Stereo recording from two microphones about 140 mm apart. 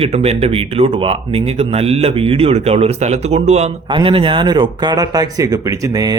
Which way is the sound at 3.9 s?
40° right (ahead or behind).